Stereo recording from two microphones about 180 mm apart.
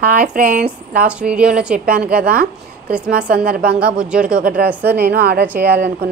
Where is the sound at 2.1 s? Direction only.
55° right (ahead or behind).